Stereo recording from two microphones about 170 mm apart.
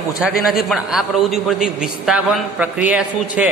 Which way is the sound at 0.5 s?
Centre (ahead or behind).